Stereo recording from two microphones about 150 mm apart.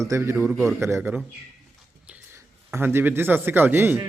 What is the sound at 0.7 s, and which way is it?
Speech, 20° right (ahead or behind).